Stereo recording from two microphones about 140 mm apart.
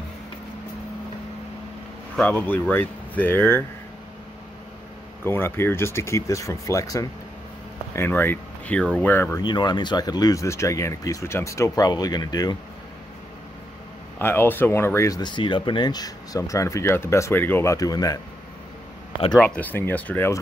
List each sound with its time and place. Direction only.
2.1 s speech: 10° left (ahead or behind)
5.2 s speech: 15° left (ahead or behind)
9.4 s speech: 30° left (ahead or behind)
14.1 s speech: 15° left (ahead or behind)
19.3 s speech: 10° left (ahead or behind)